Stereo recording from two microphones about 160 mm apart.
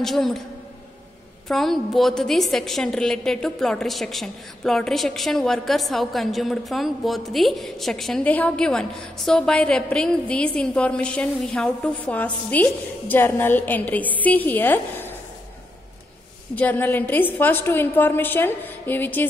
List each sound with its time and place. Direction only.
0.0 s a woman's voice: centre (ahead or behind)
1.5 s a woman's voice: centre (ahead or behind)
16.5 s a woman's voice: 10° left (ahead or behind)